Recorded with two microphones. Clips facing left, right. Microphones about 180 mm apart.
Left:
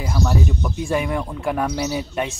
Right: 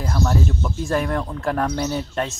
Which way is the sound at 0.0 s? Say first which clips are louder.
Even; centre (ahead or behind).